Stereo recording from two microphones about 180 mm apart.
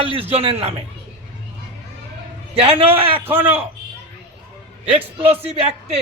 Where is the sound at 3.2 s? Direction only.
10° right (ahead or behind).